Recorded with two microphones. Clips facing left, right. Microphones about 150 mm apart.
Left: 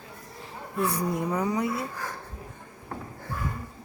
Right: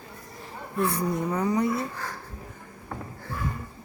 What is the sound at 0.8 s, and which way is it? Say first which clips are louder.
Speech: right 1 dB; 35° left (ahead or behind).